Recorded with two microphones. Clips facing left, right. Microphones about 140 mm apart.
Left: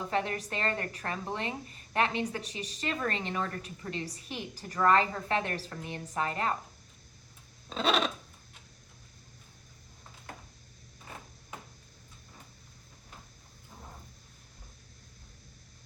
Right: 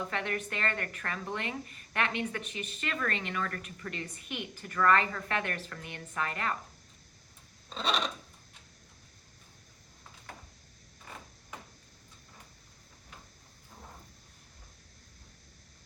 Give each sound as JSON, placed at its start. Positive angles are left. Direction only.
{"t": 0.1, "sound": "a woman's voice", "side_deg": 35}
{"t": 7.8, "sound": "filing", "side_deg": 0}